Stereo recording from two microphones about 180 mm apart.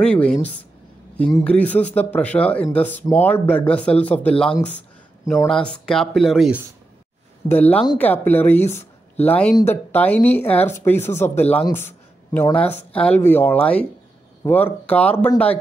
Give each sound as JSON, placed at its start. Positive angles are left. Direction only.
{"t": 0.0, "sound": "speech", "side_deg": 5}
{"t": 7.4, "sound": "speech", "side_deg": 10}